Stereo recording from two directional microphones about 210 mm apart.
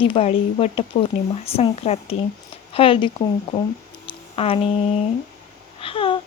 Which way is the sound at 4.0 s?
25° left (ahead or behind).